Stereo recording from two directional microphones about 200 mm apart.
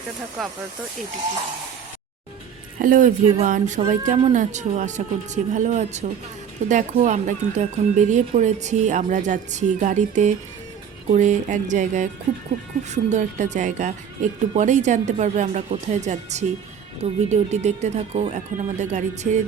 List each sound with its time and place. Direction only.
2.7 s speech: 45° right (ahead or behind)